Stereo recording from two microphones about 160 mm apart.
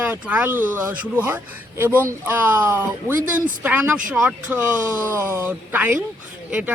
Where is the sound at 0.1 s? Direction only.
10° right (ahead or behind).